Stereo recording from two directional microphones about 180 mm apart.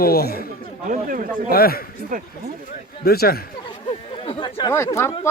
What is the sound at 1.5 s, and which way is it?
Speech, 55° left (ahead or behind).